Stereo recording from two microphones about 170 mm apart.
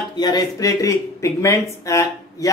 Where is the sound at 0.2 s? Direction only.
20° left (ahead or behind).